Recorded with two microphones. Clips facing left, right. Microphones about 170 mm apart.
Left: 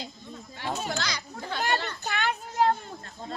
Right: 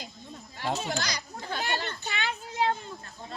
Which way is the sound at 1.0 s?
45° right (ahead or behind).